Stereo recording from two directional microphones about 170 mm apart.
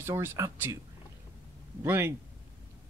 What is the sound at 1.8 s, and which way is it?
Speech, 15° right (ahead or behind).